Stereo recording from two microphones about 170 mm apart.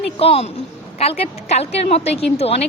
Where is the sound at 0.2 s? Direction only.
35° left (ahead or behind).